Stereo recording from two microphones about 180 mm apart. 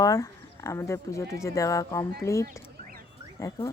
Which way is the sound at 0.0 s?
20° left (ahead or behind).